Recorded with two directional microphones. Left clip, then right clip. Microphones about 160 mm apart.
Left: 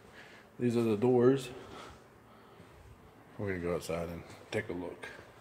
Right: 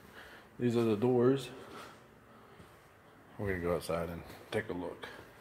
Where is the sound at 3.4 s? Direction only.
5° left (ahead or behind).